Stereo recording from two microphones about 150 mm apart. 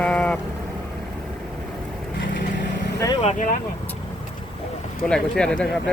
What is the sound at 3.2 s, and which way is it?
Speech, 60° left (ahead or behind).